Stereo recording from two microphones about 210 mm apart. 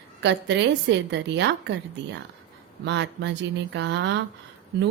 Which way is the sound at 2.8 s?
55° right (ahead or behind).